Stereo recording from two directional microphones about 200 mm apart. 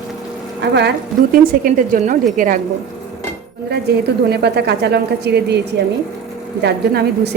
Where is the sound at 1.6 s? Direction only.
45° right (ahead or behind).